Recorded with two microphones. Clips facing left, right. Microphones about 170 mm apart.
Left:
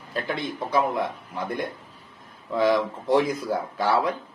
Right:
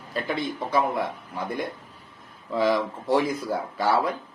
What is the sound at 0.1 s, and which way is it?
A man's voice, centre (ahead or behind).